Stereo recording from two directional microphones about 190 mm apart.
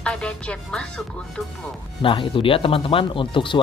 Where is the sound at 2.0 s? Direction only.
25° left (ahead or behind).